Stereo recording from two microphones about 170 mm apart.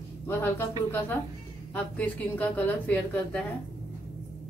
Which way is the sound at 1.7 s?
10° left (ahead or behind).